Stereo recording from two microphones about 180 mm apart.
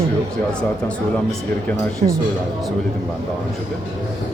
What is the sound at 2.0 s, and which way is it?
Speech, 40° right (ahead or behind).